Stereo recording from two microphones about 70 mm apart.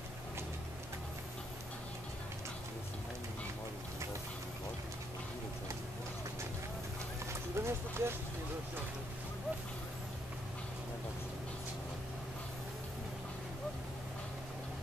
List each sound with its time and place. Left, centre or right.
7.5 s clip-clop: right